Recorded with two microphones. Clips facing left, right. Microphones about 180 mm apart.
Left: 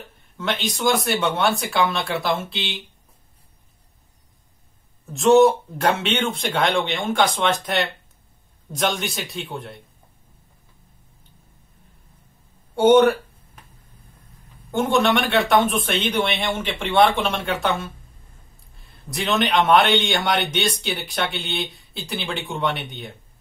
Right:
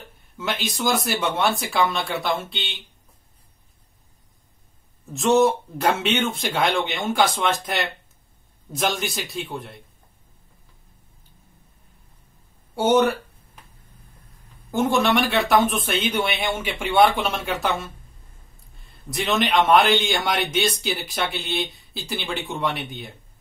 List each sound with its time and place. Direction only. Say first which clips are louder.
0.4 s a man's voice: left 2 dB; centre (ahead or behind)
5.1 s a man's voice: left 4 dB; centre (ahead or behind)
12.7 s a man's voice: left 4 dB; centre (ahead or behind)
14.7 s a man's voice: left 1 dB; centre (ahead or behind)
19.0 s a man's voice: left 1 dB; centre (ahead or behind)